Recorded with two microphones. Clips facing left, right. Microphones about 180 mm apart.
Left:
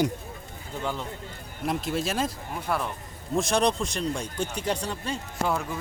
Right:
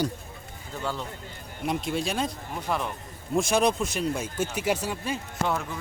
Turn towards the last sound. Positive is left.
turn(degrees=-5)  # may be behind; listen again after turning